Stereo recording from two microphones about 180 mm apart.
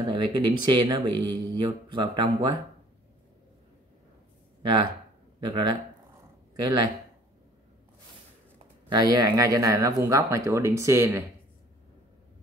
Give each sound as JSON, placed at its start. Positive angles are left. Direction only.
{"t": 0.0, "sound": "speech", "side_deg": -25}
{"t": 5.4, "sound": "speech", "side_deg": -25}
{"t": 8.8, "sound": "speech", "side_deg": -20}